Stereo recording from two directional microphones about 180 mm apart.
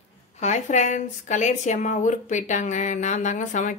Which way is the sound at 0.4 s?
40° left (ahead or behind).